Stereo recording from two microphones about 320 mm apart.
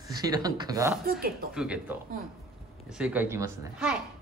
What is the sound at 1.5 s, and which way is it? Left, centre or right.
A child's voice, centre.